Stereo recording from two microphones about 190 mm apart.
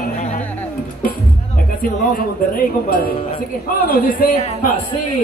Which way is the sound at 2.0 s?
50° left (ahead or behind).